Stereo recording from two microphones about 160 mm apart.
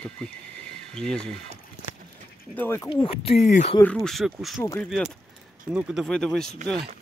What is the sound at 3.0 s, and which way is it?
Speech, 35° left (ahead or behind).